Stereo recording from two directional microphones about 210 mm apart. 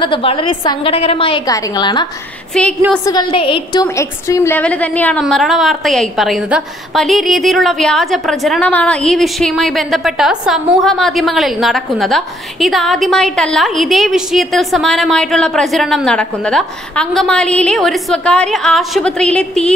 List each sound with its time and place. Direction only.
0.0 s a woman's voice: 25° left (ahead or behind)
2.5 s a woman's voice: 5° left (ahead or behind)
3.1 s a woman's voice: 20° left (ahead or behind); by 19.7 s 5° left (ahead or behind)